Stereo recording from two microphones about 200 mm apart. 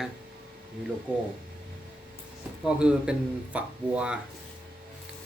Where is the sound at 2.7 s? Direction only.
5° right (ahead or behind).